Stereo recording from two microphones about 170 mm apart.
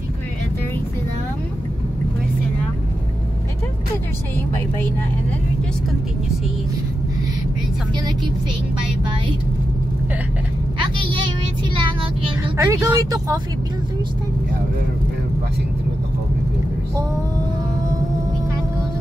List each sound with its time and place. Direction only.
10.8 s vehicle: 30° right (ahead or behind)
12.5 s speech: 20° right (ahead or behind)